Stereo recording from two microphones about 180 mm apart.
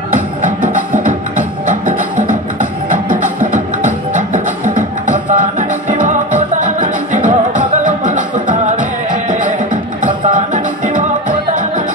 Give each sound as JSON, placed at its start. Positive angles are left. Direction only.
{"t": 0.4, "sound": "music", "side_deg": -45}
{"t": 5.0, "sound": "music", "side_deg": -45}